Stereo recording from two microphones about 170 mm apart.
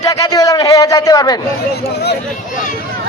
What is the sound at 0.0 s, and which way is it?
A man's voice, 20° left (ahead or behind).